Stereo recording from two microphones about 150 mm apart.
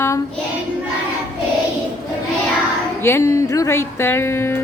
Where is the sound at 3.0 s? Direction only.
15° left (ahead or behind).